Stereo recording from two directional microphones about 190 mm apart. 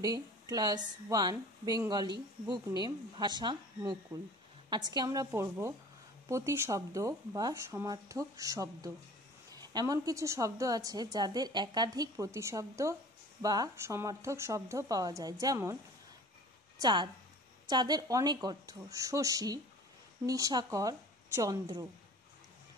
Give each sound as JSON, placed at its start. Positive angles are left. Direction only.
{"t": 0.0, "sound": "a woman's voice", "side_deg": -20}
{"t": 16.8, "sound": "a woman's voice", "side_deg": -25}